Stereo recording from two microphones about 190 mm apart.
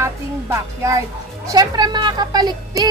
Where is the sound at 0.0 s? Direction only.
15° right (ahead or behind).